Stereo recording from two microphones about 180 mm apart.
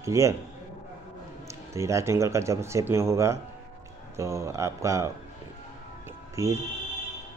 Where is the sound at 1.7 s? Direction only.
15° right (ahead or behind).